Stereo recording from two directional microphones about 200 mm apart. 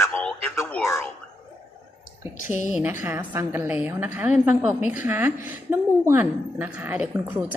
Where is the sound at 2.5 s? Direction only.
35° left (ahead or behind).